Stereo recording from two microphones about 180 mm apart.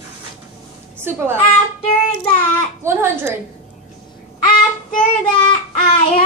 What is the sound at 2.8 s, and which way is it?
Speech, 15° right (ahead or behind).